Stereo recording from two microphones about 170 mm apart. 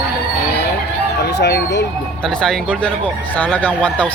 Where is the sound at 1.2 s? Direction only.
75° left (ahead or behind).